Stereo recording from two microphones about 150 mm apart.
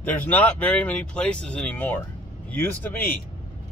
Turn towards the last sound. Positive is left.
turn(degrees=10)  # may be behind; listen again after turning